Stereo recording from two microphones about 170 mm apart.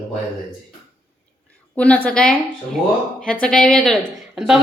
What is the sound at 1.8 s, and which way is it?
A woman's voice, 10° left (ahead or behind).